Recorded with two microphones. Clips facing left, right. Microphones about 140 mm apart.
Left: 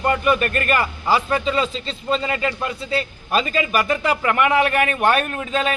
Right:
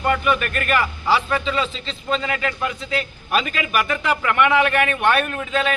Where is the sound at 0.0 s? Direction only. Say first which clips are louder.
Left 1 dB; 35° left (ahead or behind).